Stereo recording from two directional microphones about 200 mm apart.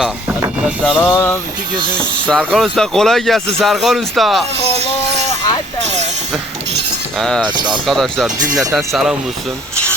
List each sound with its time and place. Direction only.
0.9 s music: 10° left (ahead or behind)
2.0 s speech: 5° left (ahead or behind)
5.1 s a sound: 35° right (ahead or behind)
7.2 s speech: 5° left (ahead or behind)
7.4 s speech: 20° right (ahead or behind)
7.7 s speech: centre (ahead or behind)